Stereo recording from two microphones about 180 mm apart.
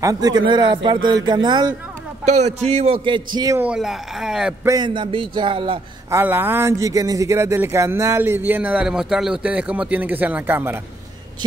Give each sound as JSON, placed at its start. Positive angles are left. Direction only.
{"t": 0.0, "sound": "speech", "side_deg": -20}
{"t": 2.2, "sound": "a man's voice", "side_deg": -40}
{"t": 3.3, "sound": "speech", "side_deg": -20}
{"t": 3.6, "sound": "speech", "side_deg": -5}
{"t": 4.6, "sound": "speech", "side_deg": -25}
{"t": 6.0, "sound": "speech", "side_deg": -15}